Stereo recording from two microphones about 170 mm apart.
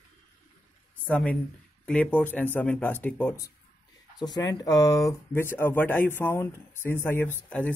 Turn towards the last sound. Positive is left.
turn(degrees=10)  # may be behind; listen again after turning